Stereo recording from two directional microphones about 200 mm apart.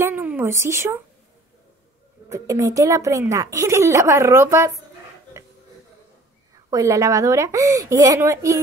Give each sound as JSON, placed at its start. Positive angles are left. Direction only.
{"t": 0.0, "sound": "a sound", "side_deg": -10}
{"t": 2.2, "sound": "a woman's voice", "side_deg": -15}
{"t": 6.5, "sound": "a woman's voice", "side_deg": -15}